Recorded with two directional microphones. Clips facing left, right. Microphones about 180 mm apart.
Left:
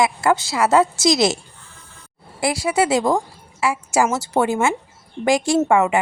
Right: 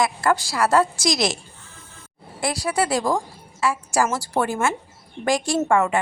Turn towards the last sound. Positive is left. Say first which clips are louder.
# left 3 dB
turn(degrees=25)  # may be behind; listen again after turning